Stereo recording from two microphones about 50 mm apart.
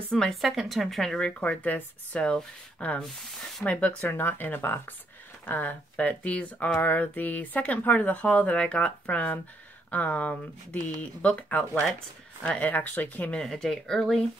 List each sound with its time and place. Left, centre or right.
0.3 s a woman's voice: centre
1.1 s speech: left
4.1 s speech: left
13.4 s speech: centre